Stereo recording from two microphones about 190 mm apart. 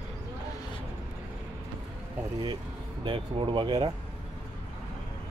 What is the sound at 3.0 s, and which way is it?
Speech, 25° right (ahead or behind).